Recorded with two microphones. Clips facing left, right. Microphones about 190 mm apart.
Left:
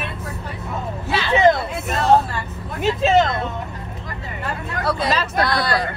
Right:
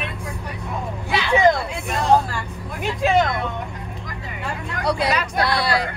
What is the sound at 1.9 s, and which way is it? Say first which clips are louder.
Speech: left 2 dB; 5° left (ahead or behind).